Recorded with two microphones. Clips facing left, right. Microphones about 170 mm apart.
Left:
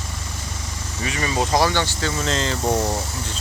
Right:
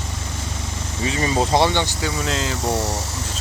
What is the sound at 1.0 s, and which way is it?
Speech, 25° right (ahead or behind).